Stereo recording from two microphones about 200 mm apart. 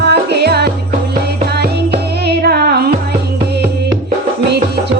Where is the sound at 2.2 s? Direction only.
55° right (ahead or behind).